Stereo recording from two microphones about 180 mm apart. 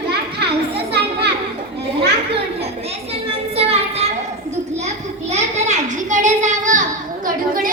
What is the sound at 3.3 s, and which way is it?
Child singing, 35° right (ahead or behind).